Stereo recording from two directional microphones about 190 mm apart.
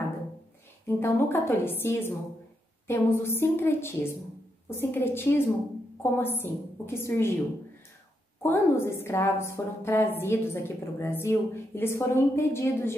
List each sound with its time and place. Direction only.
0.8 s a woman's voice: 10° left (ahead or behind)
8.4 s a woman's voice: 15° left (ahead or behind)